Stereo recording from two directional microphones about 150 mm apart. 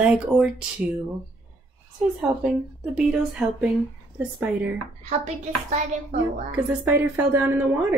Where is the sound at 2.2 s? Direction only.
5° right (ahead or behind).